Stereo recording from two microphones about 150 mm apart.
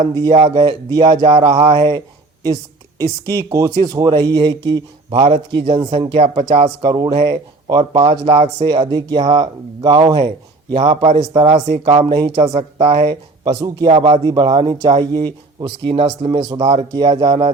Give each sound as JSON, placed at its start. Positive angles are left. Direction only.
{"t": 0.1, "sound": "speech", "side_deg": -25}
{"t": 0.3, "sound": "speech", "side_deg": -40}
{"t": 3.0, "sound": "speech", "side_deg": -20}
{"t": 5.2, "sound": "speech", "side_deg": -40}
{"t": 6.8, "sound": "speech", "side_deg": -30}
{"t": 10.8, "sound": "speech", "side_deg": -45}
{"t": 13.1, "sound": "speech", "side_deg": -25}
{"t": 16.9, "sound": "speech", "side_deg": -25}